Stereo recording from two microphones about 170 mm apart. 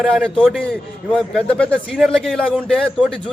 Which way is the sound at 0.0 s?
Centre (ahead or behind).